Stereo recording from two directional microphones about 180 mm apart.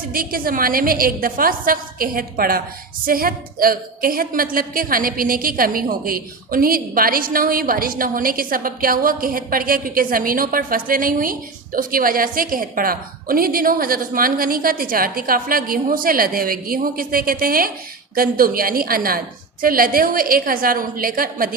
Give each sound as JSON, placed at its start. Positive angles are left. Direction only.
{"t": 0.1, "sound": "a woman's voice", "side_deg": -55}